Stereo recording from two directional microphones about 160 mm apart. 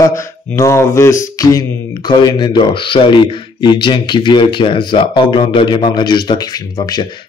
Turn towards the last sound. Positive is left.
turn(degrees=25)  # may be behind; listen again after turning